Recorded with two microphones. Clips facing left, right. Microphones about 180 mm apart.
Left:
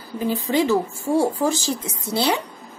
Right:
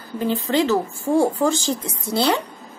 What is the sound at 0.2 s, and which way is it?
Speech, 10° left (ahead or behind).